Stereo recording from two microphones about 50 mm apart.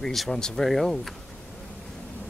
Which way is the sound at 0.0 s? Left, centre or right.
Centre.